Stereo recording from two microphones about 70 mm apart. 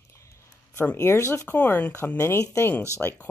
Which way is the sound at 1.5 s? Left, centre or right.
Left.